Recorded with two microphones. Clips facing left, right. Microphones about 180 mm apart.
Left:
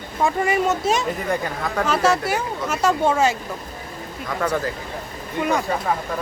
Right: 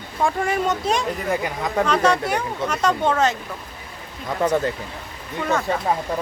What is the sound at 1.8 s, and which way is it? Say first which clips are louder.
Speech: right 1 dB; 5° left (ahead or behind).